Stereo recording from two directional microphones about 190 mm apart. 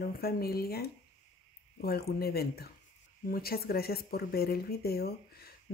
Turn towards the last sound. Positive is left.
turn(degrees=55)  # may be behind; listen again after turning